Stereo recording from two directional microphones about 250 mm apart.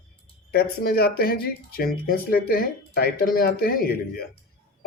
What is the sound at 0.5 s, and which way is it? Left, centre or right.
Speech, left.